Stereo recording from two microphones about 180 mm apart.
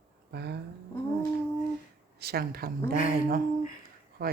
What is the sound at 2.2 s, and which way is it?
Speech, 60° right (ahead or behind).